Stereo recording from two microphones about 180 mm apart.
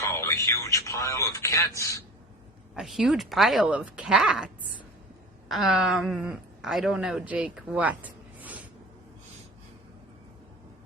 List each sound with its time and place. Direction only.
0.0 s a sound: 15° left (ahead or behind)
1.8 s a man's voice: 15° left (ahead or behind)
2.7 s speech: 5° right (ahead or behind)